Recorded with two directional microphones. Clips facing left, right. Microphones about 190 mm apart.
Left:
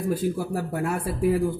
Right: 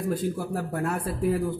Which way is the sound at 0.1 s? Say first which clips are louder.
Left 4 dB; 10° left (ahead or behind).